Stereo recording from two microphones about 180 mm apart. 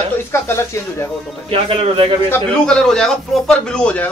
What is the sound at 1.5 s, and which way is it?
Speech, 30° right (ahead or behind).